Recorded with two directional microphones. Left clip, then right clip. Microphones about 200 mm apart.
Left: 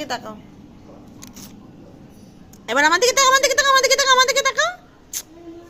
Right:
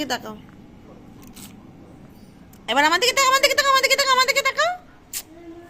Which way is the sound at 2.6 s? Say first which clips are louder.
Left 2 dB; 5° right (ahead or behind).